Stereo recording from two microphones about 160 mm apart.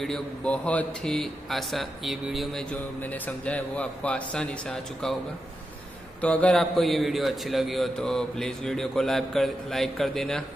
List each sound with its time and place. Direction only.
0.0 s speech: 5° left (ahead or behind)
6.2 s a man's voice: 10° left (ahead or behind)